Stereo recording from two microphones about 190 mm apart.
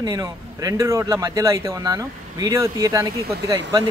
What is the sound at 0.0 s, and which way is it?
Speech, 20° right (ahead or behind).